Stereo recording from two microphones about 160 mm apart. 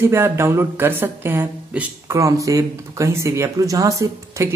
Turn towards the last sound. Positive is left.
turn(degrees=-20)  # may be behind; listen again after turning